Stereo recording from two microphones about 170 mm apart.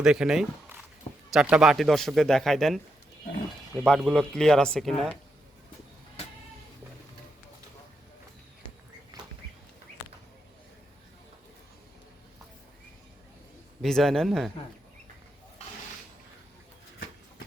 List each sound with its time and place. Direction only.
0.0 s a man's voice: 5° right (ahead or behind)
13.8 s a man's voice: centre (ahead or behind)
15.6 s a sound: 40° left (ahead or behind)